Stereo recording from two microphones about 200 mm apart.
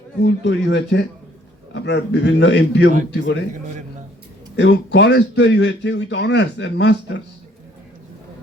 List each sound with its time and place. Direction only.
0.2 s speech: 60° left (ahead or behind)
4.5 s speech: 60° left (ahead or behind)